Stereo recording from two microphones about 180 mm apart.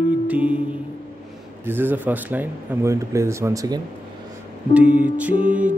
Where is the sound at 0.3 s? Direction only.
10° right (ahead or behind).